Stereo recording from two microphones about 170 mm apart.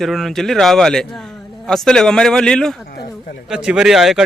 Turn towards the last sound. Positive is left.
turn(degrees=0)  # may be behind; listen again after turning